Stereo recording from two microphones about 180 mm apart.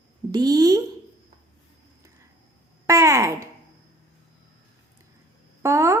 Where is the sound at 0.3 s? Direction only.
20° right (ahead or behind).